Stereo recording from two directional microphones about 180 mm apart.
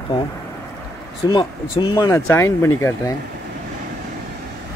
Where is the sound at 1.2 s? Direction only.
20° left (ahead or behind).